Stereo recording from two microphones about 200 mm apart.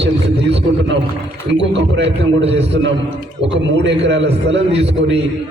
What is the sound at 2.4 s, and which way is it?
Speech, 30° right (ahead or behind).